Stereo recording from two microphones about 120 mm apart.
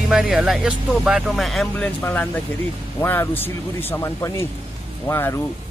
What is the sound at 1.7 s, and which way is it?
Speech, 15° left (ahead or behind).